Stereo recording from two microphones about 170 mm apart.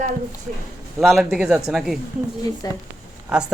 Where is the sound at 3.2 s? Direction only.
5° right (ahead or behind).